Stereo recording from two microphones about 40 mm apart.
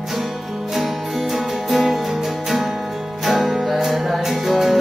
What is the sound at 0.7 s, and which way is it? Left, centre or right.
Music, centre.